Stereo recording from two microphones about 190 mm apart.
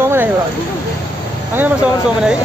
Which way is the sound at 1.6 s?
5° right (ahead or behind).